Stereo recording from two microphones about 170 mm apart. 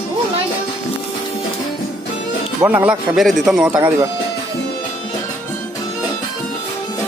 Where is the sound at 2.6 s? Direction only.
10° right (ahead or behind).